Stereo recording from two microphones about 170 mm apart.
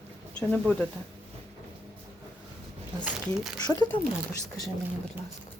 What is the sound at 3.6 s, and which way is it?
Speech, 25° left (ahead or behind).